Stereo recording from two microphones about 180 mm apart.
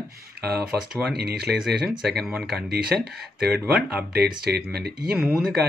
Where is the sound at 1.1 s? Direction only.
60° right (ahead or behind).